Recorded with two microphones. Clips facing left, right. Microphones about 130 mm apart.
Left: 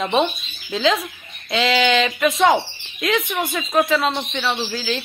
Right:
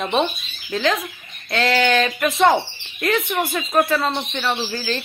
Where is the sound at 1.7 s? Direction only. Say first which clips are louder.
Even; 15° left (ahead or behind).